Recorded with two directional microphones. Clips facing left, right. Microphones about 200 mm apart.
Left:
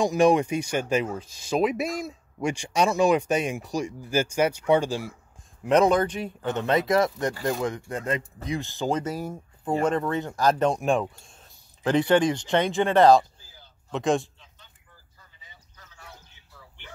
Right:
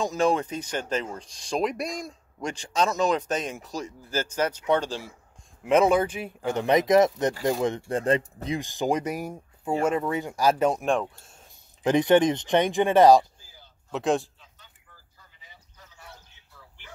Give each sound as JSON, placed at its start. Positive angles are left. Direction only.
{"t": 0.0, "sound": "speech", "side_deg": 15}
{"t": 5.6, "sound": "speech", "side_deg": -5}
{"t": 8.5, "sound": "a man's voice", "side_deg": -15}